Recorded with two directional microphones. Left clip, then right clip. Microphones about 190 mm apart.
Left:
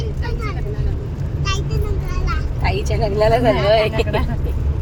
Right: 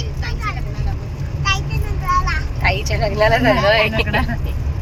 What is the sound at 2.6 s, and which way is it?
Speech, 5° left (ahead or behind).